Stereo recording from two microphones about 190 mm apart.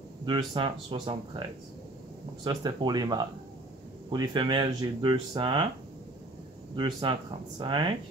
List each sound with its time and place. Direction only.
0.2 s speech: 25° right (ahead or behind)
2.4 s speech: 25° right (ahead or behind)
6.7 s speech: 25° right (ahead or behind)